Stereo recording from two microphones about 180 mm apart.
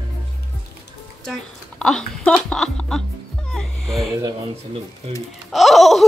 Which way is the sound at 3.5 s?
5° left (ahead or behind).